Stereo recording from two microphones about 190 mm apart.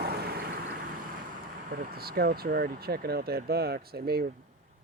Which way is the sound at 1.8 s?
55° right (ahead or behind).